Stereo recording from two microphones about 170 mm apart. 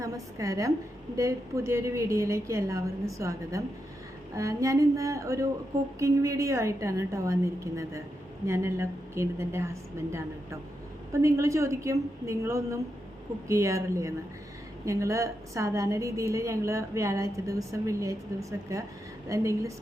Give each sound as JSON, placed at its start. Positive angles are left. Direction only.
{"t": 0.0, "sound": "music", "side_deg": -20}
{"t": 1.1, "sound": "a woman's voice", "side_deg": -15}
{"t": 4.4, "sound": "music", "side_deg": -20}
{"t": 6.0, "sound": "a woman's voice", "side_deg": -20}